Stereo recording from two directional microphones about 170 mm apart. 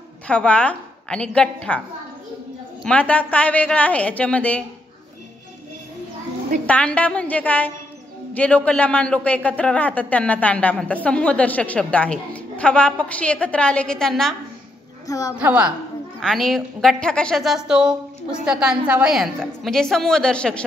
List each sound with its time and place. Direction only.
0.3 s a woman's voice: 5° left (ahead or behind)
2.8 s a woman's voice: 5° left (ahead or behind)
6.6 s a woman's voice: 5° left (ahead or behind)
15.0 s a woman's voice: 20° left (ahead or behind)
15.3 s a woman's voice: 5° right (ahead or behind)